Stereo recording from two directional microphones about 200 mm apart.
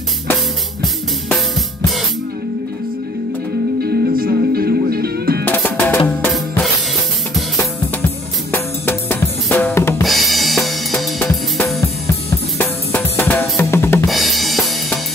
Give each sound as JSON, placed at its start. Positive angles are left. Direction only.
{"t": 3.8, "sound": "music", "side_deg": -50}
{"t": 5.4, "sound": "music", "side_deg": 10}
{"t": 8.5, "sound": "drum kit", "side_deg": 10}
{"t": 10.0, "sound": "drum kit", "side_deg": 0}
{"t": 14.0, "sound": "drum kit", "side_deg": 0}